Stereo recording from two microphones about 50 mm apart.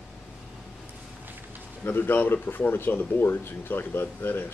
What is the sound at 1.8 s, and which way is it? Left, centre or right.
Speech, left.